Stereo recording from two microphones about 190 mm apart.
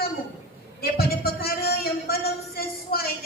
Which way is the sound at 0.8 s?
55° left (ahead or behind).